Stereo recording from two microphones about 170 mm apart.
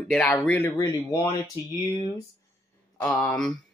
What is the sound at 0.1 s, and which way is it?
Speech, 5° left (ahead or behind).